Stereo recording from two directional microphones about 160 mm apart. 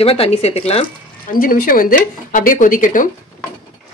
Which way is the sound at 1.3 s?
60° left (ahead or behind).